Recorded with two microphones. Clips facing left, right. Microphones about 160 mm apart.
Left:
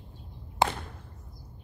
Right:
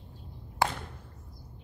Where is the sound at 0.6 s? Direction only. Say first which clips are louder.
Left 2 dB; 20° left (ahead or behind).